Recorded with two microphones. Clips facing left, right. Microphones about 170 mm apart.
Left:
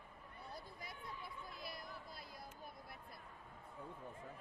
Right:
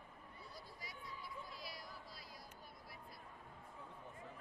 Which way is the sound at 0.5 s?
55° left (ahead or behind).